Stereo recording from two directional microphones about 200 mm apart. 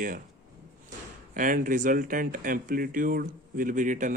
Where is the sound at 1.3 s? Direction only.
40° right (ahead or behind).